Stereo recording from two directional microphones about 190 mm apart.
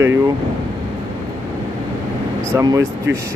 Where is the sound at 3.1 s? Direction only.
75° right (ahead or behind).